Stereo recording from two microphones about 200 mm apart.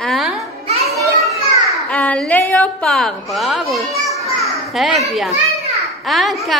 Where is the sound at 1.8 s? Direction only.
5° left (ahead or behind).